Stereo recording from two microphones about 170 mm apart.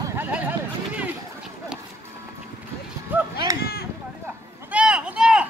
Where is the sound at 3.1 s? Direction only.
10° right (ahead or behind).